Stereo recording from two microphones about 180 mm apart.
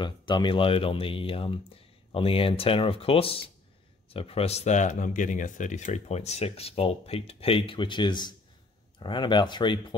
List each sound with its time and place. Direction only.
0.0 s speech: 25° left (ahead or behind)